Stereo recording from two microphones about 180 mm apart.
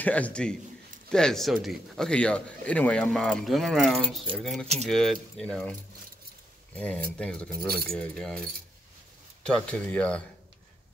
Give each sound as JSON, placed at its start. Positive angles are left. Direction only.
{"t": 0.0, "sound": "a man's voice", "side_deg": 10}
{"t": 7.5, "sound": "speech", "side_deg": -60}
{"t": 9.5, "sound": "speech", "side_deg": 5}